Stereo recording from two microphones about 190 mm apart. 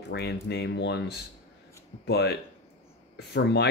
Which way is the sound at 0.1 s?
60° left (ahead or behind).